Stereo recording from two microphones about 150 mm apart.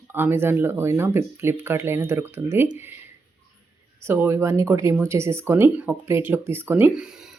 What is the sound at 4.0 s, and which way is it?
Speech, 15° right (ahead or behind).